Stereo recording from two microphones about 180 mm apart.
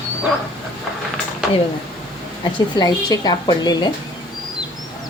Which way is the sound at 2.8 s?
20° left (ahead or behind).